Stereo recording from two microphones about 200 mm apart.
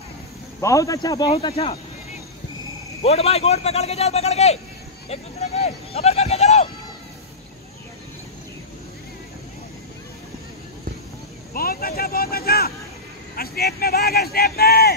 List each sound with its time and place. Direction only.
0.6 s a man's voice: 15° left (ahead or behind)
3.0 s a man's voice: 30° left (ahead or behind)
11.5 s speech: 45° left (ahead or behind)